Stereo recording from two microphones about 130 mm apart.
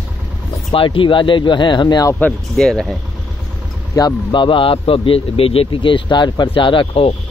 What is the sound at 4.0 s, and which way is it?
A man's voice, 35° left (ahead or behind).